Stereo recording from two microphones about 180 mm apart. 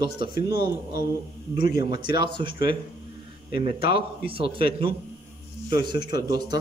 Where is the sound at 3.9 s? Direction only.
30° right (ahead or behind).